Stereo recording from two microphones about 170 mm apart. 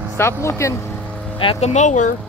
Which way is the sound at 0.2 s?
15° left (ahead or behind).